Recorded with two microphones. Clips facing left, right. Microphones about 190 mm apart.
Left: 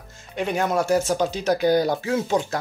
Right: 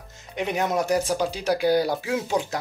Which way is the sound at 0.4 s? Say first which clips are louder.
Left 2 dB; 20° right (ahead or behind).